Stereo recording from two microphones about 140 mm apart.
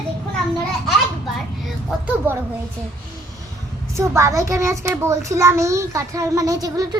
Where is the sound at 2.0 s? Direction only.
15° right (ahead or behind).